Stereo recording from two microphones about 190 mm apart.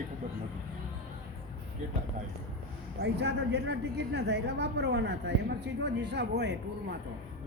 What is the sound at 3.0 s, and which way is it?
A woman's voice, 65° right (ahead or behind).